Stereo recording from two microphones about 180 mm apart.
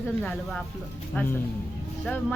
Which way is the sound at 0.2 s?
5° left (ahead or behind).